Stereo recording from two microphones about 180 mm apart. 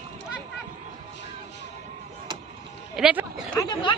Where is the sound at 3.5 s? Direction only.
20° left (ahead or behind).